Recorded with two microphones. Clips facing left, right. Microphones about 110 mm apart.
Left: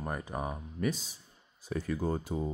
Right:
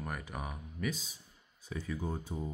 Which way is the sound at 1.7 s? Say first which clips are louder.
Left 6 dB; 60° left (ahead or behind).